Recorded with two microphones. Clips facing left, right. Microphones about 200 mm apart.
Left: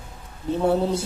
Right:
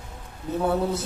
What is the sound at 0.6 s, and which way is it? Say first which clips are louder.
Speech: left 3 dB; 30° left (ahead or behind).